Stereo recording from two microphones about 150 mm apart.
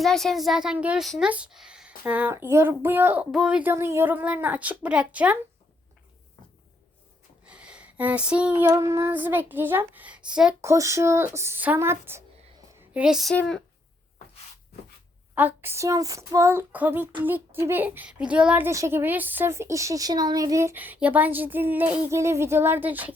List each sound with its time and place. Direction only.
0.0 s a woman's voice: centre (ahead or behind)
2.0 s female singing: 10° right (ahead or behind)
7.4 s female singing: 5° right (ahead or behind)
10.6 s female singing: 20° right (ahead or behind)
12.9 s a woman's voice: 5° right (ahead or behind)
15.4 s female singing: 15° right (ahead or behind)